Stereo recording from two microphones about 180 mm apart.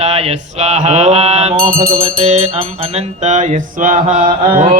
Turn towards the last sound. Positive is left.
turn(degrees=-50)  # may be behind; listen again after turning